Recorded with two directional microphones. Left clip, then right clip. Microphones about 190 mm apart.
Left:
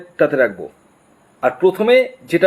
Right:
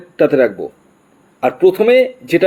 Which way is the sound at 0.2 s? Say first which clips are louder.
Right 3 dB; 35° right (ahead or behind).